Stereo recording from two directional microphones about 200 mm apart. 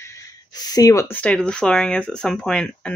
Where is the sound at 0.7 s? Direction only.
15° left (ahead or behind).